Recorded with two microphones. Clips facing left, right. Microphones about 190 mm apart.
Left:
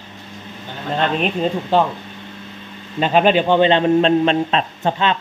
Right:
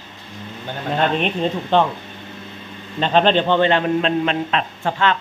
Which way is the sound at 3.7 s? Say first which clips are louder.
Left 4 dB; 30° left (ahead or behind).